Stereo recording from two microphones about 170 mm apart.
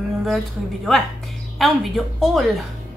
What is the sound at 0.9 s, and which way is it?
Speech, centre (ahead or behind).